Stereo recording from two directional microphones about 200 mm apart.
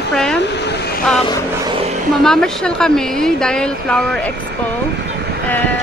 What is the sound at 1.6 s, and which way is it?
Vehicle, 30° right (ahead or behind).